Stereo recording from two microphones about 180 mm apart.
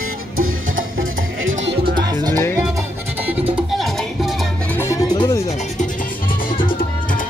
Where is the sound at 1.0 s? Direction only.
90° right.